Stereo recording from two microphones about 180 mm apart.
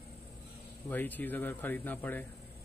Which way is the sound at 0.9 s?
10° left (ahead or behind).